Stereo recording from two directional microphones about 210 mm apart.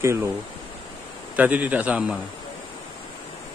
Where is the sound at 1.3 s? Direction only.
5° right (ahead or behind).